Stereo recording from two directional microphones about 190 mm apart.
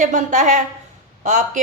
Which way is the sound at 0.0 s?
40° right (ahead or behind).